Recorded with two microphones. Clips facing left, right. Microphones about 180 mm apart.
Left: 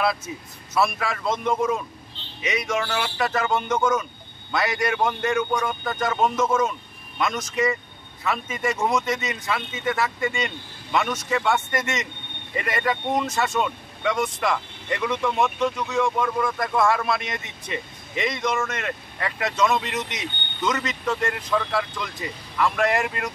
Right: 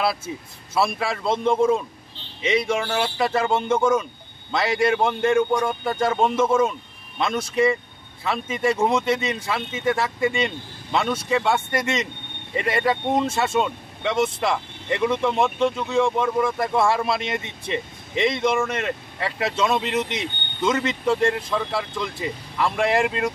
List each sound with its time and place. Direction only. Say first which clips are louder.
0.7 s speech: right 1 dB; 30° right (ahead or behind)